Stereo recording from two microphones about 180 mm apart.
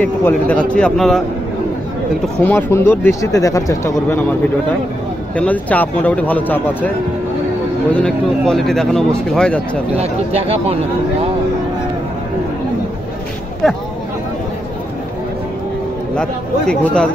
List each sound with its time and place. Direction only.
0.0 s speech: 10° left (ahead or behind)
2.4 s speech: 10° left (ahead or behind)
5.3 s speech: 10° left (ahead or behind)
7.9 s speech: 5° left (ahead or behind)
9.9 s speech: 35° right (ahead or behind)
16.2 s speech: 5° left (ahead or behind)